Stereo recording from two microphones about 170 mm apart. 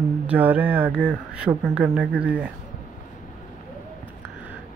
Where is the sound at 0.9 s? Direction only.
10° left (ahead or behind).